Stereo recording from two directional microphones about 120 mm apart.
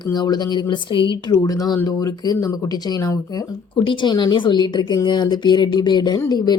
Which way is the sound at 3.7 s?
40° left (ahead or behind).